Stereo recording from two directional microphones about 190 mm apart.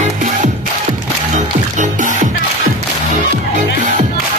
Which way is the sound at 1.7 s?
40° right (ahead or behind).